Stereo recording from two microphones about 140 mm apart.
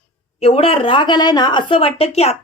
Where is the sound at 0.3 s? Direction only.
45° left (ahead or behind).